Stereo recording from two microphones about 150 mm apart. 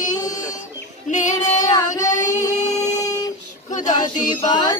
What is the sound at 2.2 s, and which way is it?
Singing, 55° left (ahead or behind).